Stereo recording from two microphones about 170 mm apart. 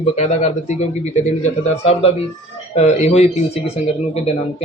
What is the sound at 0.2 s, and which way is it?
A man's voice, 40° left (ahead or behind).